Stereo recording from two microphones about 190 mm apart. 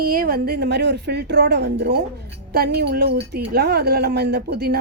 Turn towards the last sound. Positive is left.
turn(degrees=-55)  # may be behind; listen again after turning